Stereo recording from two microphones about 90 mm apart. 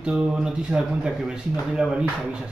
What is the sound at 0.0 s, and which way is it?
Speech, 10° right (ahead or behind).